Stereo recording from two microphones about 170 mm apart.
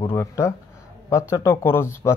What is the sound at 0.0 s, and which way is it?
Speech, 15° left (ahead or behind).